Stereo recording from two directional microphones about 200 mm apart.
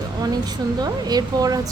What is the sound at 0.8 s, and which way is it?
Speech, 20° right (ahead or behind).